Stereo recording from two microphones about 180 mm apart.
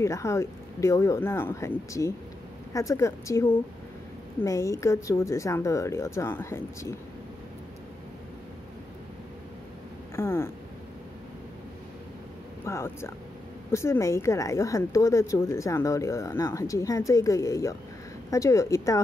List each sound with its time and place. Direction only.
0.0 s a woman's voice: 15° left (ahead or behind)
10.1 s a sound: 15° left (ahead or behind)
12.6 s a woman's voice: 15° left (ahead or behind)